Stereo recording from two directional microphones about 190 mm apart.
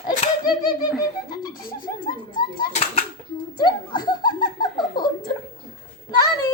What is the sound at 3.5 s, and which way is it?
Speech, 25° left (ahead or behind).